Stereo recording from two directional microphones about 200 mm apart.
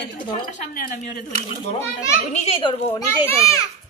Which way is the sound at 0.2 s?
40° left (ahead or behind).